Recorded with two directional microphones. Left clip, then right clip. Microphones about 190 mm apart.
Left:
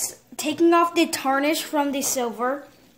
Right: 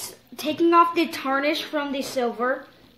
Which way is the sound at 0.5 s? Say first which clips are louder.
Even; 45° left (ahead or behind).